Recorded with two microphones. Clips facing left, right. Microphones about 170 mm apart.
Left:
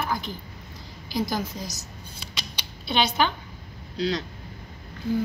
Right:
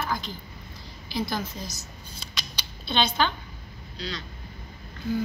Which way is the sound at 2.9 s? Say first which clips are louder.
Left 2 dB; 10° left (ahead or behind).